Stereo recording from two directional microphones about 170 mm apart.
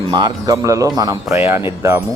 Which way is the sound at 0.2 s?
25° right (ahead or behind).